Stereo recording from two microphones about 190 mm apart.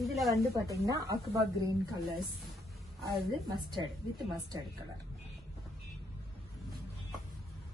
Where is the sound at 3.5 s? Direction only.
20° right (ahead or behind).